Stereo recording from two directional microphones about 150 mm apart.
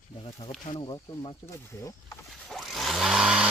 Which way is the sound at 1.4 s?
20° left (ahead or behind).